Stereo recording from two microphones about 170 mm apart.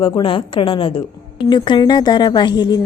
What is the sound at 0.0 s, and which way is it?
Speech, 30° left (ahead or behind).